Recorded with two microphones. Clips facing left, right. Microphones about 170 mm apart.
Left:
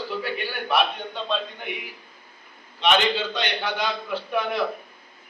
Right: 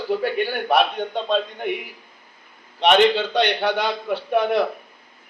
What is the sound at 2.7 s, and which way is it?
A man's voice, 60° right (ahead or behind).